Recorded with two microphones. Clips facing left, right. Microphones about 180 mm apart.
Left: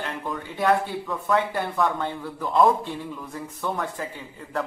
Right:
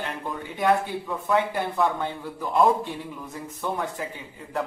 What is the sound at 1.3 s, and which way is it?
A man's voice, 15° right (ahead or behind).